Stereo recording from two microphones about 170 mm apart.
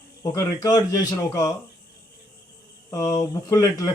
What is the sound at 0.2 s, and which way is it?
Speech, 20° left (ahead or behind).